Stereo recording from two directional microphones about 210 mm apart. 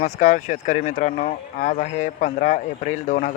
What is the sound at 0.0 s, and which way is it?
Speech, 40° left (ahead or behind).